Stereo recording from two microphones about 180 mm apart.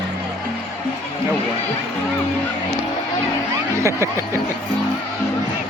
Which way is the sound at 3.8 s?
15° right (ahead or behind).